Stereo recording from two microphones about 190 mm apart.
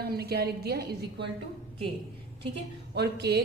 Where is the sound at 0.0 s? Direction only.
55° right (ahead or behind).